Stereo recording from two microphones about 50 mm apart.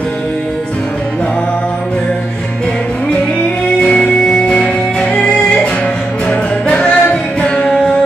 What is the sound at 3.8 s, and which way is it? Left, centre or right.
Music, centre.